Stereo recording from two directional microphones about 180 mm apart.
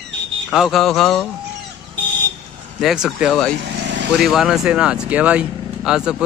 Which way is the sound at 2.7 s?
Centre (ahead or behind).